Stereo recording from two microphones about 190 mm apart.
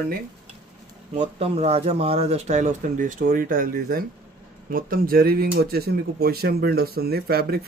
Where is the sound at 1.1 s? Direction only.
35° right (ahead or behind).